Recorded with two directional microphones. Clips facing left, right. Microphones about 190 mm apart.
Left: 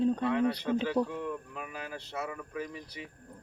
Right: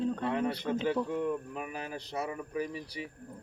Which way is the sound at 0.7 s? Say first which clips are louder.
Left 2 dB; 30° right (ahead or behind).